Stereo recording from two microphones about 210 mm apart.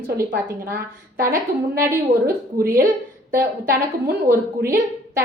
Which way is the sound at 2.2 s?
45° right (ahead or behind).